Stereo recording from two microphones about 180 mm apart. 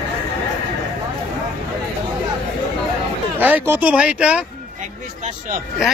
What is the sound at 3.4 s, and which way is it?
Speech, 10° right (ahead or behind).